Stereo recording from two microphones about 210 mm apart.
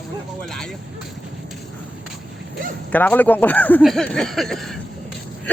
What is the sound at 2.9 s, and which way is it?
Speech, 10° left (ahead or behind).